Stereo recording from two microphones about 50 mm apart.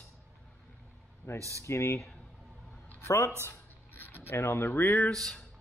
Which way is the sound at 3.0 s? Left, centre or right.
Left.